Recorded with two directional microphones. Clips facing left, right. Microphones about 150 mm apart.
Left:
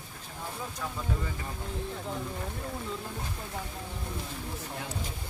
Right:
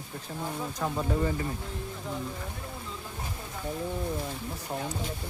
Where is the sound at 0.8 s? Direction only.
45° right (ahead or behind).